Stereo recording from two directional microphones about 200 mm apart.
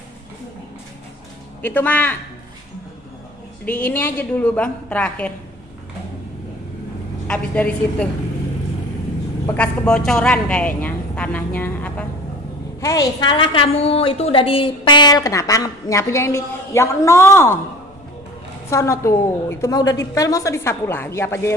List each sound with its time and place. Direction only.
1.6 s a woman's voice: 10° left (ahead or behind)
3.6 s a woman's voice: 10° left (ahead or behind)
7.2 s a woman's voice: 5° left (ahead or behind)
9.5 s a woman's voice: 5° left (ahead or behind)
12.8 s a woman's voice: 20° left (ahead or behind)
18.7 s a woman's voice: 15° left (ahead or behind)